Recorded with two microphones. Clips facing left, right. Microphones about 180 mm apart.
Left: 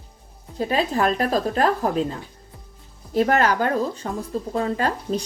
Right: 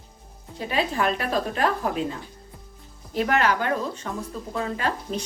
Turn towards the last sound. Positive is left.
turn(degrees=35)  # may be behind; listen again after turning